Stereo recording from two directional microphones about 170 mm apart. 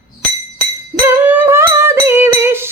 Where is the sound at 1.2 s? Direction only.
10° right (ahead or behind).